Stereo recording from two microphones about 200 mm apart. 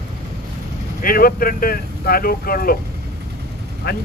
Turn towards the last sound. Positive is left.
turn(degrees=50)  # may be behind; listen again after turning